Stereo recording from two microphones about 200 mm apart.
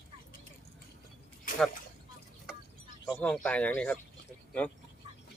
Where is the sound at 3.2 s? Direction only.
5° left (ahead or behind).